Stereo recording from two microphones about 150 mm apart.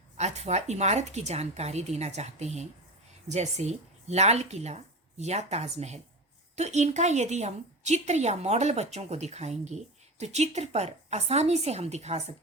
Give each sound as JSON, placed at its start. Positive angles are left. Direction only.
{"t": 0.2, "sound": "a woman's voice", "side_deg": -50}